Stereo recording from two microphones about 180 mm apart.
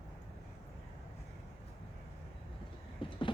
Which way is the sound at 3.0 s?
30° left (ahead or behind).